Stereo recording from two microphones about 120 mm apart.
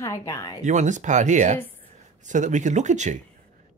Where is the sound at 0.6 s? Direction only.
90° right.